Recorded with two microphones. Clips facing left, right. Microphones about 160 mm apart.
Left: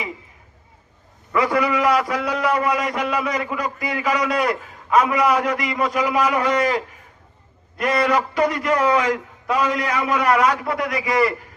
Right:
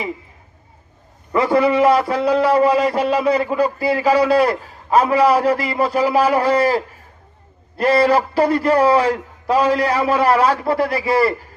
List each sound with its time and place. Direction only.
1.3 s a man's voice: 30° right (ahead or behind)